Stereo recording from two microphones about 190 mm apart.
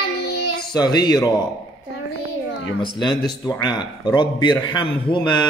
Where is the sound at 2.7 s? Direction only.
25° left (ahead or behind).